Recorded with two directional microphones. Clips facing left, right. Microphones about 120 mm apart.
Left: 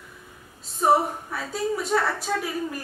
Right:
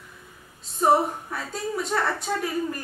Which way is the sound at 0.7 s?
Centre (ahead or behind).